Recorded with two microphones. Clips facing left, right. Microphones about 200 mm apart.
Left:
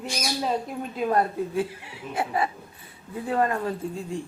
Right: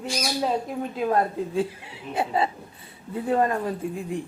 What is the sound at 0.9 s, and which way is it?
Speech, 5° right (ahead or behind).